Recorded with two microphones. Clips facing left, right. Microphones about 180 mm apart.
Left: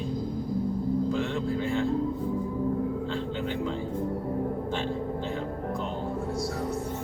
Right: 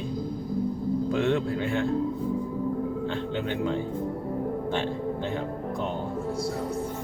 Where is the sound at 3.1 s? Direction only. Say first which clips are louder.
Right 1 dB; 60° right (ahead or behind).